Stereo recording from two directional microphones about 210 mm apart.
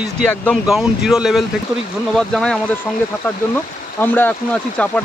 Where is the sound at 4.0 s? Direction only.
10° left (ahead or behind).